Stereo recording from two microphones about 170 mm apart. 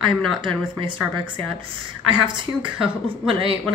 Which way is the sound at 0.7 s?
30° right (ahead or behind).